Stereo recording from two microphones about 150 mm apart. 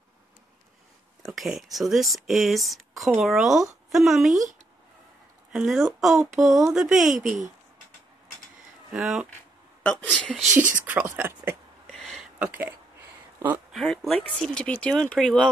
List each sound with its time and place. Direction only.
1.2 s speech: 5° right (ahead or behind)
5.5 s speech: centre (ahead or behind)
8.9 s speech: 5° right (ahead or behind)
9.8 s speech: 10° left (ahead or behind)
10.5 s speech: 60° right (ahead or behind)
10.9 s speech: 10° right (ahead or behind)
13.4 s a sound: 10° right (ahead or behind)
13.7 s speech: centre (ahead or behind)